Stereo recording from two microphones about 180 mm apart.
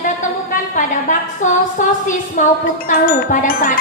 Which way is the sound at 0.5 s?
45° left (ahead or behind).